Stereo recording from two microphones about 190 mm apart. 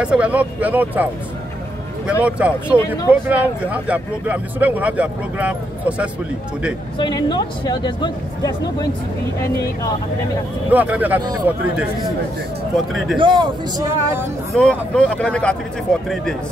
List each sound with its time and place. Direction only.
0.0 s speech: 5° right (ahead or behind)
2.2 s speech: 5° right (ahead or behind)
7.0 s speech: 20° left (ahead or behind)
10.7 s speech: 10° right (ahead or behind)
12.7 s speech: centre (ahead or behind)
13.2 s speech: 25° right (ahead or behind)
14.5 s speech: 5° left (ahead or behind)